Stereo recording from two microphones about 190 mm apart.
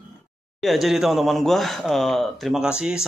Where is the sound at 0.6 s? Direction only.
Centre (ahead or behind).